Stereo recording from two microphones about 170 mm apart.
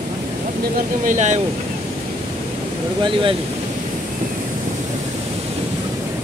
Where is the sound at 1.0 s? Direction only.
50° right (ahead or behind).